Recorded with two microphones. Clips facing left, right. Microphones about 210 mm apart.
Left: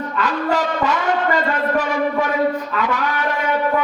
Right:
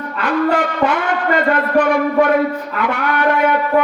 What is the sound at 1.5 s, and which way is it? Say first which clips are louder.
A man's voice: right 5 dB; 60° right (ahead or behind).